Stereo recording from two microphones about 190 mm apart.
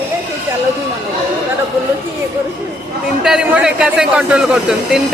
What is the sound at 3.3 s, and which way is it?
Speech, 5° right (ahead or behind).